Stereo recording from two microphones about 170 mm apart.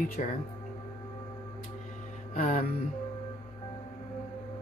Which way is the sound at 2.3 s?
55° left (ahead or behind).